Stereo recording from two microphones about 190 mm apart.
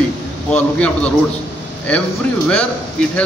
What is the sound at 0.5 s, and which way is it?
Speech, 5° left (ahead or behind).